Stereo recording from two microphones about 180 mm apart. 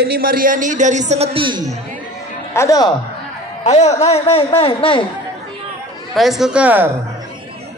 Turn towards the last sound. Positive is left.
turn(degrees=-10)  # may be behind; listen again after turning